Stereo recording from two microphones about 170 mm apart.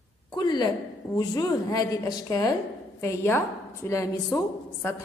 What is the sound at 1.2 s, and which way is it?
A man's voice, 20° left (ahead or behind).